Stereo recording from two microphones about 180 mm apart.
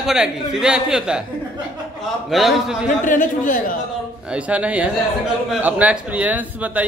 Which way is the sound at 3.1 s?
45° left (ahead or behind).